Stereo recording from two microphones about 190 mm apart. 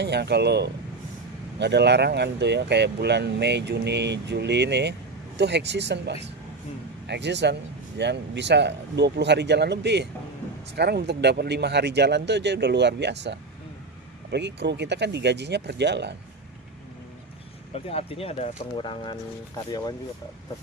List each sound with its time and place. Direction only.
0.0 s speech: 60° right (ahead or behind)
17.8 s speech: 30° left (ahead or behind)